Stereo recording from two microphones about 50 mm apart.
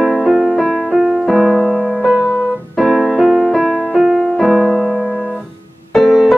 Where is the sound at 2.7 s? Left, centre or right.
Centre.